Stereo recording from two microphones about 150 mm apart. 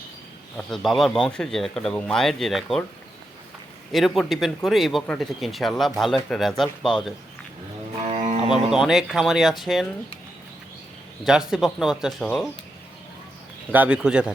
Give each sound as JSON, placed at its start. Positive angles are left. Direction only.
{"t": 0.5, "sound": "speech", "side_deg": 0}
{"t": 3.9, "sound": "speech", "side_deg": 0}
{"t": 8.0, "sound": "music", "side_deg": -45}
{"t": 8.7, "sound": "speech", "side_deg": 0}
{"t": 11.2, "sound": "speech", "side_deg": -5}
{"t": 13.7, "sound": "speech", "side_deg": -10}